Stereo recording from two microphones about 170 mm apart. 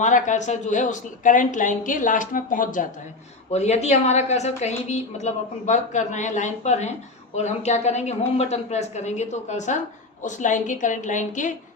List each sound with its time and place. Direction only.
0.0 s a woman's voice: 45° left (ahead or behind)
3.5 s a woman's voice: 40° left (ahead or behind)